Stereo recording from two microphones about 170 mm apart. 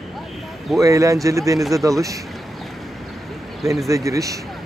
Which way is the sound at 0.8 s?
20° right (ahead or behind).